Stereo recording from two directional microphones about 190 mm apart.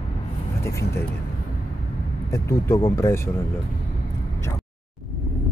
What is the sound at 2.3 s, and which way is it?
Speech, 15° left (ahead or behind).